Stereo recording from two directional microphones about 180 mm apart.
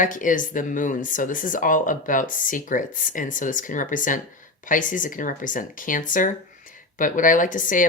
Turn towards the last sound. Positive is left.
turn(degrees=45)  # may be behind; listen again after turning